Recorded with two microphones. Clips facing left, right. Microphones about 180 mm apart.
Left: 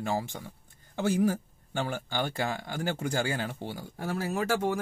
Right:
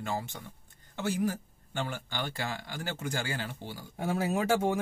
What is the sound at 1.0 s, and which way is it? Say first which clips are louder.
Speech: left 4 dB; 50° left (ahead or behind).